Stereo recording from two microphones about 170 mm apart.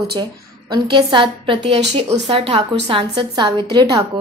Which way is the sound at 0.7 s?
25° right (ahead or behind).